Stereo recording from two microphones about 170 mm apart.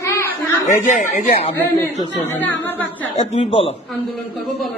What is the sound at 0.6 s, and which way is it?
Speech, 50° left (ahead or behind).